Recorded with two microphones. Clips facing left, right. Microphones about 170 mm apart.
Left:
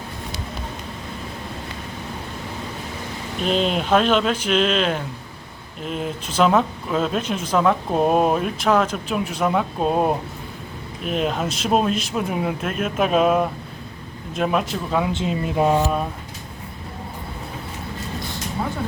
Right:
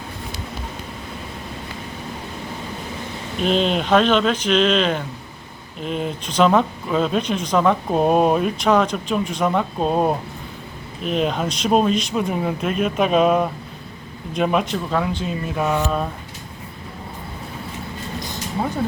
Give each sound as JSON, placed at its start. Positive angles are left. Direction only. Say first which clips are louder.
{"t": 3.4, "sound": "speech", "louder": "right 2 dB", "side_deg": 0}
{"t": 15.1, "sound": "speech", "louder": "left 2 dB", "side_deg": 25}
{"t": 15.8, "sound": "speech", "louder": "left 1 dB", "side_deg": 10}